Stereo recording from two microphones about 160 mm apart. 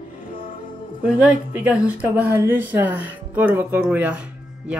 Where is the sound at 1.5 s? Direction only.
10° right (ahead or behind).